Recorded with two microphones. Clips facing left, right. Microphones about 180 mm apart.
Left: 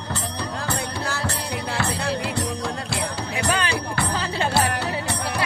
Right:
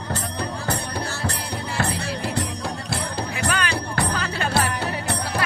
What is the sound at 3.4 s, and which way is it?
Music, 30° left (ahead or behind).